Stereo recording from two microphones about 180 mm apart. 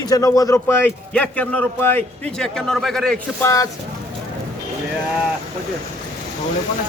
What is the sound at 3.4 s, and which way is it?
Speech, 15° left (ahead or behind).